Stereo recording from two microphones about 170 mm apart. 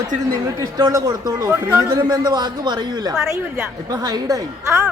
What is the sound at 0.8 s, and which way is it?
A man's voice, 20° right (ahead or behind).